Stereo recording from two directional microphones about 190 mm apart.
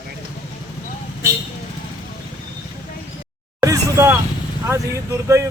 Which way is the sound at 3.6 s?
15° right (ahead or behind).